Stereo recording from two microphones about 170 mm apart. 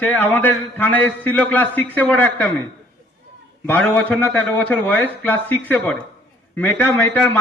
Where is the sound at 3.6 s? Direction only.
10° left (ahead or behind).